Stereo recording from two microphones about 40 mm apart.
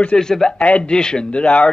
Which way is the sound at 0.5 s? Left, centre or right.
Left.